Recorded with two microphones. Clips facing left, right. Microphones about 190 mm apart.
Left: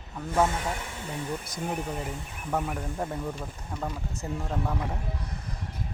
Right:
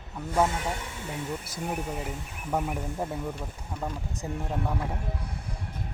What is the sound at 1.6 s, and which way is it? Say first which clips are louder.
Speech: even; 10° right (ahead or behind).